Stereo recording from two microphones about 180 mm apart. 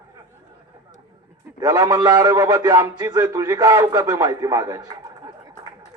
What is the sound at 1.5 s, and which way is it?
A man's voice, 20° right (ahead or behind).